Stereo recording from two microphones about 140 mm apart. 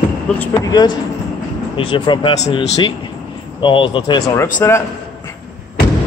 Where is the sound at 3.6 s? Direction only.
35° left (ahead or behind).